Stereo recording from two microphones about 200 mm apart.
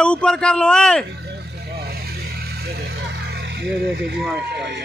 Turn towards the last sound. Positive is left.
turn(degrees=-5)  # may be behind; listen again after turning